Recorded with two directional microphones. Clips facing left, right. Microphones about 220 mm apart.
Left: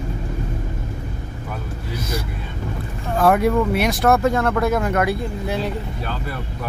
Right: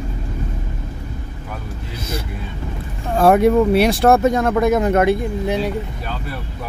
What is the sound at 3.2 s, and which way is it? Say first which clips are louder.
Speech: right 4 dB; 25° right (ahead or behind).